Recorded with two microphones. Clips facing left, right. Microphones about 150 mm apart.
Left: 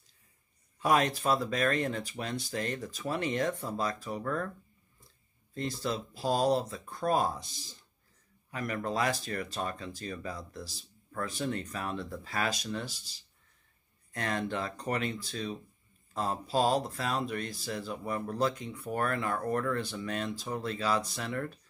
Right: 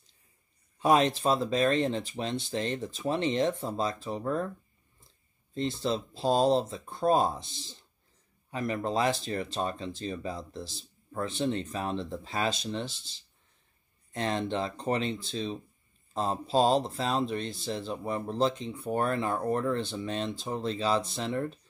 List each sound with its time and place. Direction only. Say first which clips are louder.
0.7 s speech: right 3 dB; 25° right (ahead or behind)
5.5 s speech: right 4 dB; 25° right (ahead or behind)